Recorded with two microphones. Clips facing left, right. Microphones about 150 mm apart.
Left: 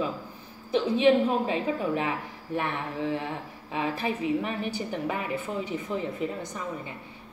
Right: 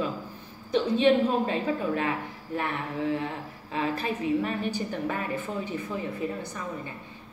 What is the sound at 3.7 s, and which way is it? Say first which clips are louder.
A woman's voice: even; 15° left (ahead or behind).